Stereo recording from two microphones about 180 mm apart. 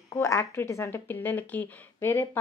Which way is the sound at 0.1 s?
15° left (ahead or behind).